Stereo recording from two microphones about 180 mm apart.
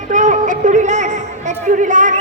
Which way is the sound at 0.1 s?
45° right (ahead or behind).